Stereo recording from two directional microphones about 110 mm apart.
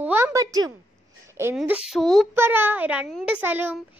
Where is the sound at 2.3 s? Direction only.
20° right (ahead or behind).